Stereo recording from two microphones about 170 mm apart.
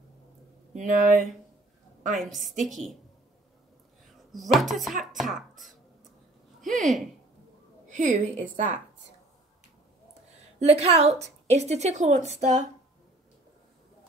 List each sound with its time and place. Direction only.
0.7 s a woman's voice: 50° right (ahead or behind)
2.1 s speech: centre (ahead or behind)
4.4 s speech: centre (ahead or behind)
6.6 s speech: centre (ahead or behind)
7.9 s a woman's voice: 45° right (ahead or behind)
10.6 s a woman's voice: 40° right (ahead or behind)